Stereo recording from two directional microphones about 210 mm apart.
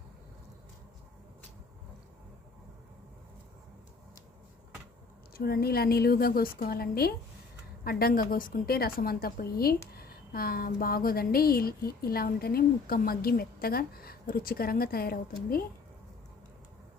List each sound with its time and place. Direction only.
5.3 s speech: 45° left (ahead or behind)